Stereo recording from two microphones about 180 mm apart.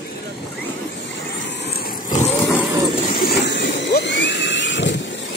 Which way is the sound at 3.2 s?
65° left (ahead or behind).